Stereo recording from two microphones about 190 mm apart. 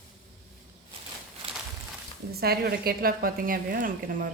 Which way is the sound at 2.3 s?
55° right (ahead or behind).